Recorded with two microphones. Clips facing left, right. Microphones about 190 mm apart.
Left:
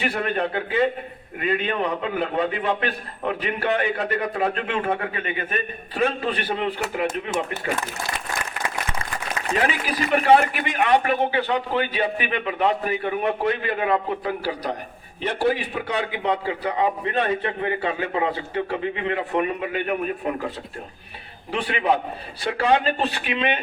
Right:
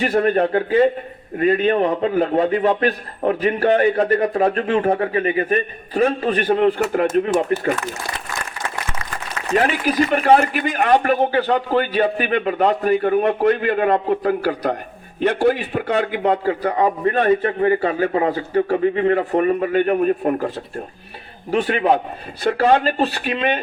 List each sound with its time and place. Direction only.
0.0 s a man's voice: 40° right (ahead or behind)
9.6 s a man's voice: 45° right (ahead or behind)
21.5 s a man's voice: 45° right (ahead or behind)